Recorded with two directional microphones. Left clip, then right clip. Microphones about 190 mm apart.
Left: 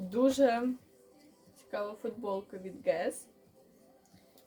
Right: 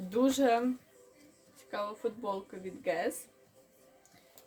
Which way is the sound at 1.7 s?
15° right (ahead or behind).